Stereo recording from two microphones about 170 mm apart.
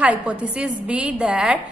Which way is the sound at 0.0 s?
5° right (ahead or behind).